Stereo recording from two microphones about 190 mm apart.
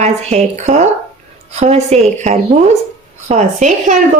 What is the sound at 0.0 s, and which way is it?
A woman's voice, 35° right (ahead or behind).